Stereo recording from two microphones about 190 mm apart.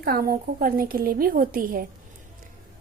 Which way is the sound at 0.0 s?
55° right (ahead or behind).